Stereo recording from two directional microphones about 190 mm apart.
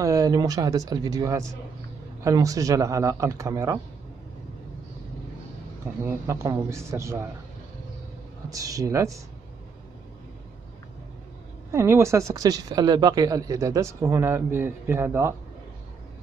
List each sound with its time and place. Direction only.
0.0 s speech: 20° right (ahead or behind)
6.0 s speech: 15° right (ahead or behind)
8.5 s speech: 20° right (ahead or behind)
11.7 s speech: 15° right (ahead or behind)